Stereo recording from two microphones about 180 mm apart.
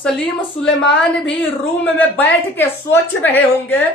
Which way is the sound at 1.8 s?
10° left (ahead or behind).